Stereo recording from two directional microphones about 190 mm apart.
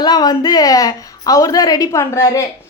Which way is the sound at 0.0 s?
20° left (ahead or behind).